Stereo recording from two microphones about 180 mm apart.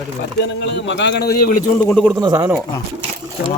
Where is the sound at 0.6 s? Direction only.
90° left; by 1.7 s 60° left (ahead or behind).